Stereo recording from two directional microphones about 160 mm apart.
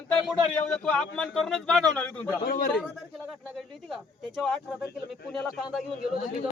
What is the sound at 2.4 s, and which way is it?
Speech, 65° left (ahead or behind).